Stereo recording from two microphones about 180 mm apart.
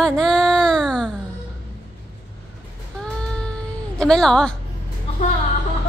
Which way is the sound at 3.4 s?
5° left (ahead or behind).